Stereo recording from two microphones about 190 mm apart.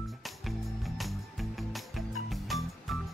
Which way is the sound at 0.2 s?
Centre (ahead or behind).